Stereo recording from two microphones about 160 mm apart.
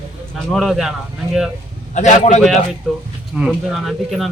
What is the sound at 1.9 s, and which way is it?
Speech, 45° left (ahead or behind).